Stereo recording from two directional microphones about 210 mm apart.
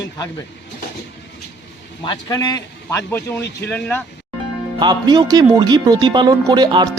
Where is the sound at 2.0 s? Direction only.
20° left (ahead or behind).